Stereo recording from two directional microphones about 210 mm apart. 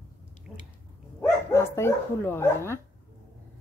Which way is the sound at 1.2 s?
10° left (ahead or behind).